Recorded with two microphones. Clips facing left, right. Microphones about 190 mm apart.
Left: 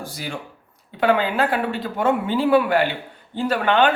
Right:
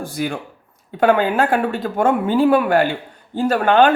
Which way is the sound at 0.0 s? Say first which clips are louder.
Right 7 dB; 55° right (ahead or behind).